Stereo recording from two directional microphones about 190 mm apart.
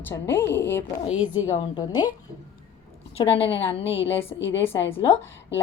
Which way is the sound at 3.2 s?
30° left (ahead or behind).